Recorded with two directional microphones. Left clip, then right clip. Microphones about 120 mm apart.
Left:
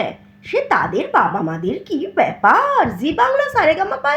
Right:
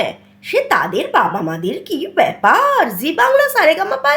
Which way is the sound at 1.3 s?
35° right (ahead or behind).